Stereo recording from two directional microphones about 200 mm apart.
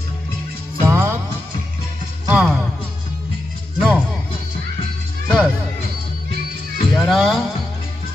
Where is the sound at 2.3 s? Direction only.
5° right (ahead or behind).